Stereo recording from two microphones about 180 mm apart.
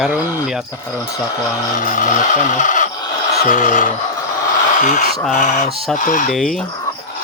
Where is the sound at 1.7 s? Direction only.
45° left (ahead or behind).